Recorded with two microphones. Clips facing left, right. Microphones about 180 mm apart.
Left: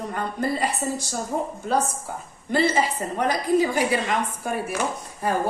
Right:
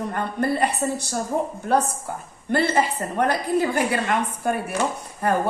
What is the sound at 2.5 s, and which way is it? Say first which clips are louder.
A woman's voice: right 1 dB; 55° right (ahead or behind).